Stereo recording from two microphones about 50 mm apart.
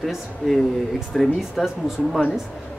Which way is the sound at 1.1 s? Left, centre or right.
Centre.